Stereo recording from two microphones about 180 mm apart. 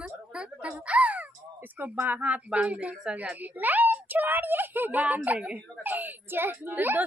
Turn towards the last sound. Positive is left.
turn(degrees=-10)  # may be behind; listen again after turning